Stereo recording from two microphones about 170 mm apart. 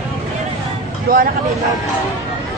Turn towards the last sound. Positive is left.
turn(degrees=-60)  # may be behind; listen again after turning